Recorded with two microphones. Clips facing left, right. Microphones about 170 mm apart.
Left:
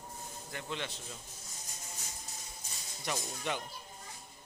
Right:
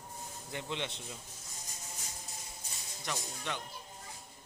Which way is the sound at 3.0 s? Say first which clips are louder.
Left 3 dB; 10° left (ahead or behind).